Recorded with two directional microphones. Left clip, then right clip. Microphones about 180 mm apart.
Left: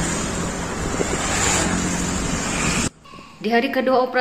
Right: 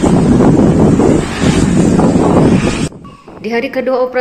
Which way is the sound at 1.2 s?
65° left (ahead or behind).